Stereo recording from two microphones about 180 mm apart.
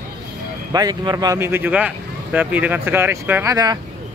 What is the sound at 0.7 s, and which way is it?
Speech, 20° right (ahead or behind).